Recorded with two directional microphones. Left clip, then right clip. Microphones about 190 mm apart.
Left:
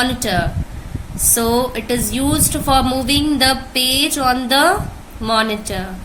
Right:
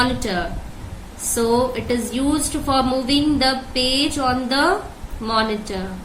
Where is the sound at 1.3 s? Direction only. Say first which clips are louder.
Left 1 dB; 50° left (ahead or behind).